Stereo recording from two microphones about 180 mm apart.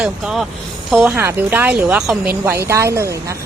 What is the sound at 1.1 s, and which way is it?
Speech, 10° right (ahead or behind).